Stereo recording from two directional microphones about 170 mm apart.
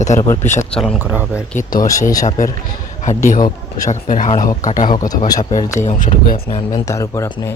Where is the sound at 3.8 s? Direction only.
50° left (ahead or behind).